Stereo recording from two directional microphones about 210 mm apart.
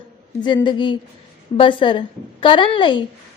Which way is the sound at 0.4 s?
20° left (ahead or behind).